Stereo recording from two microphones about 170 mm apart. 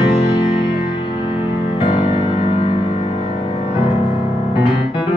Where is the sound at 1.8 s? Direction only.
30° left (ahead or behind).